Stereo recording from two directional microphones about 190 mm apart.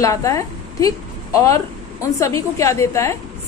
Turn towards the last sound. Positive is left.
turn(degrees=15)  # may be behind; listen again after turning